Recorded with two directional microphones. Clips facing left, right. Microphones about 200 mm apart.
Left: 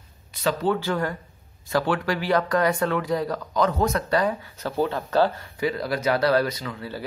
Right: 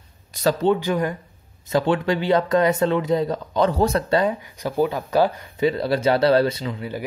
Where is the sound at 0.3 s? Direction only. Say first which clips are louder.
Right 4 dB; 40° right (ahead or behind).